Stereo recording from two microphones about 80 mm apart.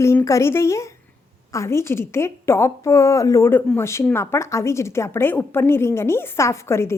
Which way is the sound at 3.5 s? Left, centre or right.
Left.